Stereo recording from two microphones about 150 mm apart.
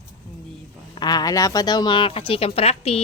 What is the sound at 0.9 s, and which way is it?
Speech, 25° left (ahead or behind).